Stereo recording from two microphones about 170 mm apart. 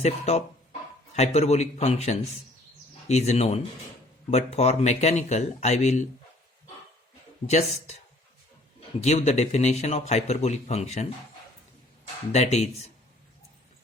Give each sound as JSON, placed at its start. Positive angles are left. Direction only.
{"t": 0.0, "sound": "a man's voice", "side_deg": 40}
{"t": 7.4, "sound": "a man's voice", "side_deg": 40}
{"t": 9.0, "sound": "a man's voice", "side_deg": 40}
{"t": 12.3, "sound": "a man's voice", "side_deg": 40}